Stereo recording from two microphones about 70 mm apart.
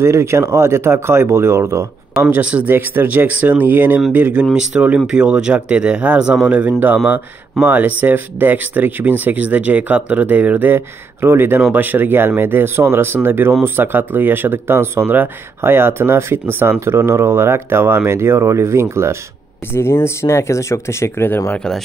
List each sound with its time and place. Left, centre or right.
0.0 s speech: right
2.3 s speech: right
19.7 s speech: left